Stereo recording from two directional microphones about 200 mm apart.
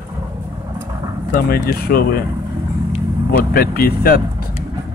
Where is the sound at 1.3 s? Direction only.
45° left (ahead or behind).